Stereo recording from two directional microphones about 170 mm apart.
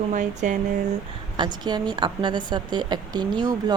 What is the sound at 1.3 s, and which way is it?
A woman's voice, 25° right (ahead or behind).